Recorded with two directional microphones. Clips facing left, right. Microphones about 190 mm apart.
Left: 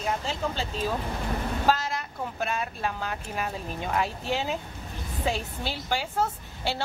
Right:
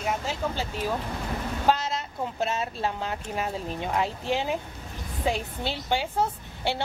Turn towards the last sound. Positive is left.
turn(degrees=-20)  # may be behind; listen again after turning